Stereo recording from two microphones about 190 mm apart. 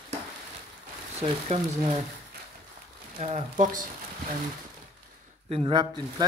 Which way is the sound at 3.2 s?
35° right (ahead or behind).